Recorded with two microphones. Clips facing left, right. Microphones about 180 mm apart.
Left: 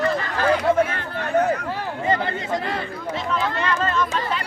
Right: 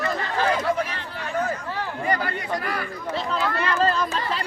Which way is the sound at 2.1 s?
25° left (ahead or behind).